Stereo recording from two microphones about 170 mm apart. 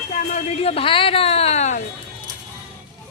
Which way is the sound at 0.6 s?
35° left (ahead or behind).